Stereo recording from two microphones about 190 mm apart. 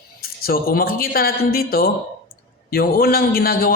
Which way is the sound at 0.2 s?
50° left (ahead or behind).